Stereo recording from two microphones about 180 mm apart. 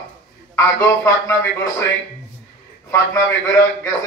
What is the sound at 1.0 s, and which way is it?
Speech, 15° left (ahead or behind).